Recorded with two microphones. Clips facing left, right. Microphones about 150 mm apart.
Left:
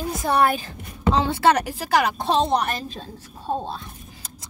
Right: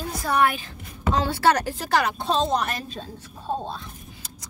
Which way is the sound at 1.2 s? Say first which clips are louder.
Even; 20° left (ahead or behind).